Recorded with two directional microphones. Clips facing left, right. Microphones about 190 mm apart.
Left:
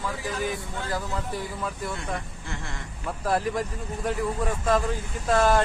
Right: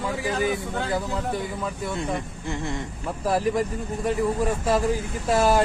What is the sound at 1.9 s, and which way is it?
Speech, 20° right (ahead or behind).